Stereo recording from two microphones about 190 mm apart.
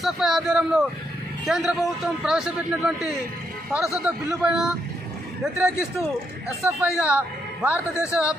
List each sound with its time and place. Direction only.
0.0 s a man's voice: centre (ahead or behind)
7.1 s a man's voice: 5° right (ahead or behind)
8.1 s speech: 15° left (ahead or behind)